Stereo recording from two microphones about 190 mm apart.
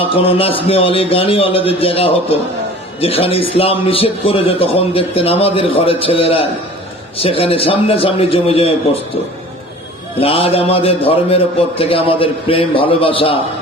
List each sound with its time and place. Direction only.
0.0 s a man's voice: 30° left (ahead or behind)
10.2 s a man's voice: 30° left (ahead or behind)